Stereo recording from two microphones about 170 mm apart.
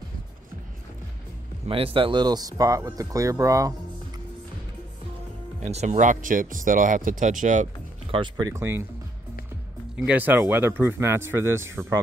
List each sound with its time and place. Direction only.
1.7 s speech: 30° right (ahead or behind)
5.6 s speech: 40° right (ahead or behind)
8.1 s speech: 25° right (ahead or behind)
9.9 s speech: 10° right (ahead or behind)